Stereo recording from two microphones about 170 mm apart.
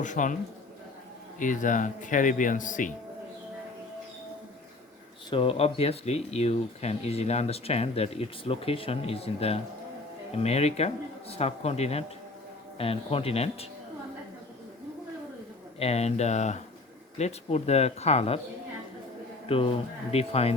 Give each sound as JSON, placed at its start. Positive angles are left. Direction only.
{"t": 0.0, "sound": "speech", "side_deg": 50}
{"t": 1.4, "sound": "speech", "side_deg": 50}
{"t": 5.3, "sound": "speech", "side_deg": 30}
{"t": 15.8, "sound": "speech", "side_deg": 40}
{"t": 19.5, "sound": "speech", "side_deg": 35}